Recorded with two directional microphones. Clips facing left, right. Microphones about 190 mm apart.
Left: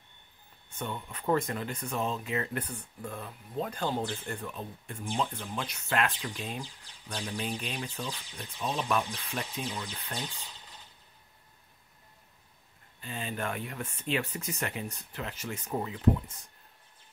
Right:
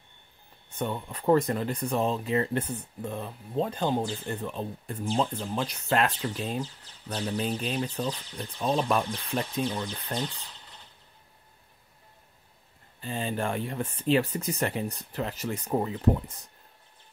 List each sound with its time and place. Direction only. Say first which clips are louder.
0.7 s speech: right 6 dB; 35° right (ahead or behind)
13.0 s speech: right 5 dB; 35° right (ahead or behind)